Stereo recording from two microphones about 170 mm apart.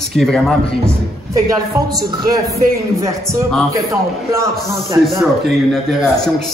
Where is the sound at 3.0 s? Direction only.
15° right (ahead or behind).